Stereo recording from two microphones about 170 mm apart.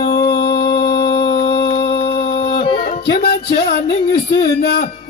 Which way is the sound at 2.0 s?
70° left (ahead or behind).